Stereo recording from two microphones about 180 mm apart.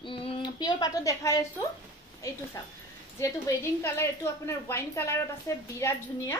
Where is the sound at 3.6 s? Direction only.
15° left (ahead or behind).